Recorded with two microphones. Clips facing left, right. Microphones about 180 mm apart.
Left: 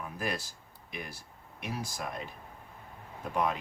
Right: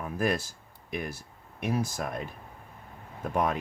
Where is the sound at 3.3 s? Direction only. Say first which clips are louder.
Right 3 dB; 50° right (ahead or behind).